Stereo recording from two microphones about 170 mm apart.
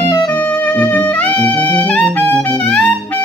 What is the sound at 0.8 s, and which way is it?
Music, 10° left (ahead or behind).